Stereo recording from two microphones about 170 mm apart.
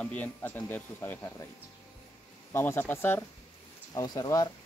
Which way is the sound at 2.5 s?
15° left (ahead or behind).